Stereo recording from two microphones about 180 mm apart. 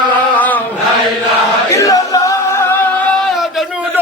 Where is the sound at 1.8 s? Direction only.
20° left (ahead or behind).